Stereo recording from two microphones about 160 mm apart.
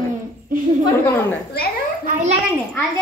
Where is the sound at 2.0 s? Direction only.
50° right (ahead or behind).